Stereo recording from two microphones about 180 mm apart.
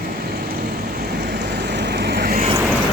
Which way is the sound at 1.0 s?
60° right (ahead or behind).